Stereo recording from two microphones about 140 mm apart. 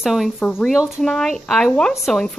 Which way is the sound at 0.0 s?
Centre (ahead or behind).